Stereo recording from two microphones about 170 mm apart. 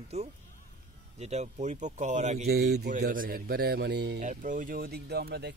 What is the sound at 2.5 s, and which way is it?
Speech, 75° right (ahead or behind).